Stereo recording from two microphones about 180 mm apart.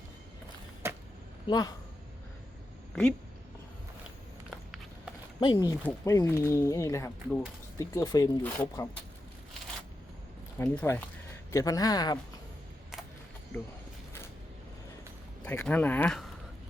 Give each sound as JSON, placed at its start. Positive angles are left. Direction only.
{"t": 0.8, "sound": "arrow", "side_deg": -15}
{"t": 1.5, "sound": "speech", "side_deg": 20}
{"t": 5.4, "sound": "speech", "side_deg": 25}
{"t": 10.6, "sound": "speech", "side_deg": 15}
{"t": 15.4, "sound": "speech", "side_deg": 10}